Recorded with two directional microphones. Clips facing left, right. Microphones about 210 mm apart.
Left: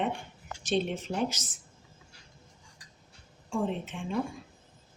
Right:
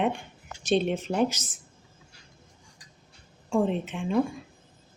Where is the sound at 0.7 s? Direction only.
65° right (ahead or behind).